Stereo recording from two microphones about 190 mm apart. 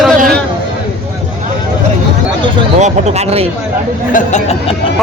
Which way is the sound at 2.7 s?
35° right (ahead or behind).